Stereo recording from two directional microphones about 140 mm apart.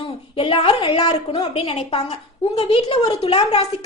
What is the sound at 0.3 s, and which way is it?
A woman's voice, 40° left (ahead or behind).